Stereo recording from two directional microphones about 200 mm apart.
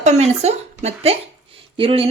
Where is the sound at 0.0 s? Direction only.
35° right (ahead or behind).